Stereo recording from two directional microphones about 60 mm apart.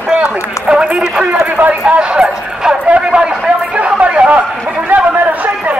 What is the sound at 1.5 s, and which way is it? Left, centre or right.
Run, right.